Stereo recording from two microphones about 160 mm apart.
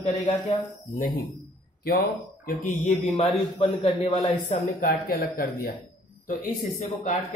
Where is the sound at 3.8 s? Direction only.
35° left (ahead or behind).